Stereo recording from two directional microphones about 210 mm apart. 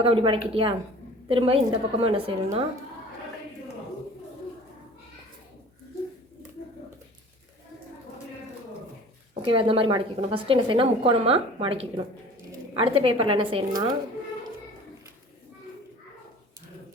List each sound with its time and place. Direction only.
0.0 s a woman's voice: 25° right (ahead or behind)
9.4 s a woman's voice: 25° right (ahead or behind)